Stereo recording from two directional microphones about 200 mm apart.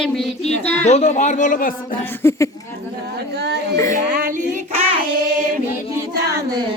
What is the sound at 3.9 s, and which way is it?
Child singing, 45° right (ahead or behind).